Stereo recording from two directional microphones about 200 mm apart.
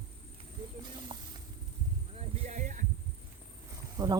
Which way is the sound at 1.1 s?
25° right (ahead or behind).